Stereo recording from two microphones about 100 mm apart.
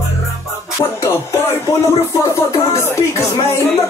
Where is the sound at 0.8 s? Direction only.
25° left (ahead or behind).